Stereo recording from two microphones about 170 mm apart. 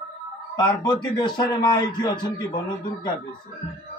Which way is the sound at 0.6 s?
25° left (ahead or behind).